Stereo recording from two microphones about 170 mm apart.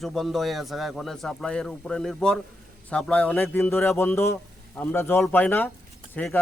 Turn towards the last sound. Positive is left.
turn(degrees=10)  # may be behind; listen again after turning